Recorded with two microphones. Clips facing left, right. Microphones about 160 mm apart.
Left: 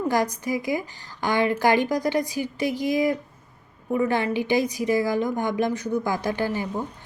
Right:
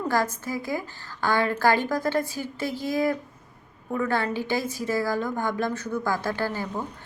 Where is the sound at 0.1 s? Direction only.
15° left (ahead or behind).